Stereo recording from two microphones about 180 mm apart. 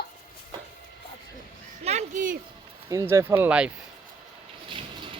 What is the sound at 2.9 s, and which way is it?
Speech, 15° right (ahead or behind).